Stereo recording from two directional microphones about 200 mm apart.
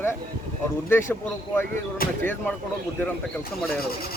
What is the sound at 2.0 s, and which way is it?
Speech, 45° left (ahead or behind).